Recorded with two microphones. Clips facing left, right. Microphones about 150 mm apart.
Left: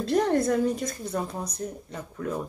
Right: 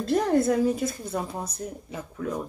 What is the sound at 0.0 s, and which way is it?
A woman's voice, centre (ahead or behind).